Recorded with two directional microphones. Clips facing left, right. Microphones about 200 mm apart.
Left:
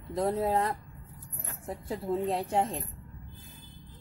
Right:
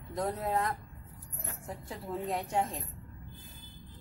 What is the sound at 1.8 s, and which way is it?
Speech, 30° left (ahead or behind).